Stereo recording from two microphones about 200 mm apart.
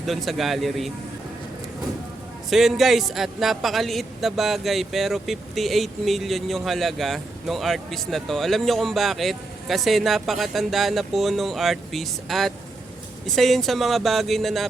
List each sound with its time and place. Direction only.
0.0 s a man's voice: centre (ahead or behind)
2.5 s a man's voice: centre (ahead or behind)